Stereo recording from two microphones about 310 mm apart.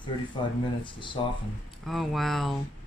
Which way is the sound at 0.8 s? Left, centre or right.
Centre.